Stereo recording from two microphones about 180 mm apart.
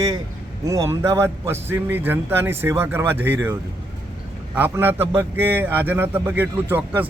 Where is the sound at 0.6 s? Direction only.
15° right (ahead or behind).